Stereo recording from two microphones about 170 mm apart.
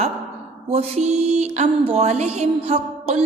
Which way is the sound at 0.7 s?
40° right (ahead or behind).